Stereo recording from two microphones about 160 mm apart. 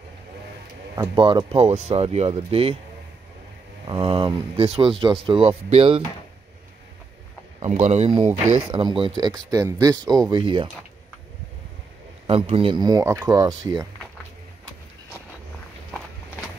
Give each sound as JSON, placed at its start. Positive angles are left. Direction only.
{"t": 0.9, "sound": "speech", "side_deg": -30}
{"t": 3.8, "sound": "speech", "side_deg": -35}
{"t": 7.6, "sound": "speech", "side_deg": -45}
{"t": 8.7, "sound": "speech", "side_deg": -30}
{"t": 12.3, "sound": "speech", "side_deg": -35}